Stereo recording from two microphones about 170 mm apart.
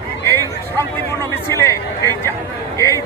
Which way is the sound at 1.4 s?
15° left (ahead or behind).